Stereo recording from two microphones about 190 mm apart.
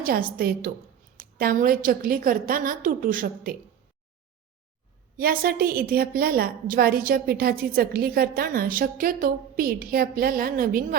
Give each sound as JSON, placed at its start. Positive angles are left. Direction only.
{"t": 0.0, "sound": "a woman's voice", "side_deg": -50}
{"t": 5.1, "sound": "a woman's voice", "side_deg": -50}